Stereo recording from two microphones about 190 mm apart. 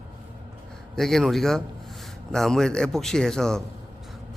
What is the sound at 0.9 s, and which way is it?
Speech, centre (ahead or behind).